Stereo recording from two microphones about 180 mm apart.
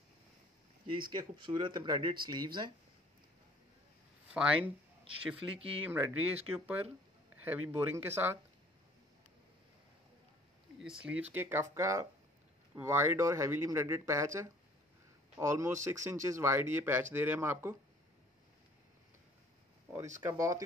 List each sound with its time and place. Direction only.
1.1 s speech: 25° right (ahead or behind)
4.3 s speech: 5° right (ahead or behind)
5.9 s speech: 10° right (ahead or behind)
10.8 s speech: 5° right (ahead or behind)
20.2 s speech: 15° right (ahead or behind)